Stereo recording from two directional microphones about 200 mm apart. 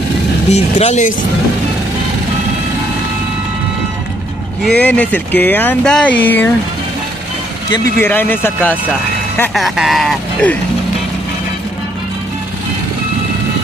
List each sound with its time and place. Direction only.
0.5 s speech: 35° left (ahead or behind)
4.7 s speech: 5° left (ahead or behind)
7.7 s speech: 10° left (ahead or behind)